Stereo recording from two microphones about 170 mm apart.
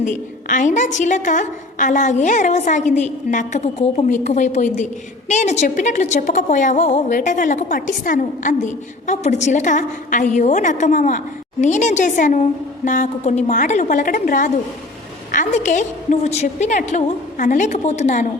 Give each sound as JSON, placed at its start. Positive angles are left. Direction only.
{"t": 0.0, "sound": "a woman's voice", "side_deg": 50}